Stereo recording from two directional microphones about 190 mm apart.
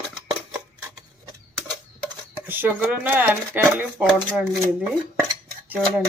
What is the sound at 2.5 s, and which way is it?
Speech, 10° right (ahead or behind).